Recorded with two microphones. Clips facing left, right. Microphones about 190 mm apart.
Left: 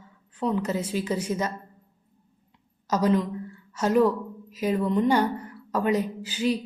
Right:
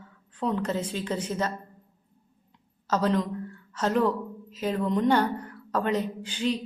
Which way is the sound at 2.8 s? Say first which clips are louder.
Left 2 dB; 10° left (ahead or behind).